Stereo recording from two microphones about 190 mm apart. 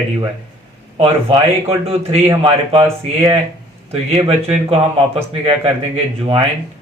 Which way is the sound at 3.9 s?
30° right (ahead or behind).